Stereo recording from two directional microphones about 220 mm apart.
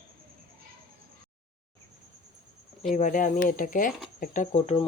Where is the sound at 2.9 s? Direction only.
35° left (ahead or behind).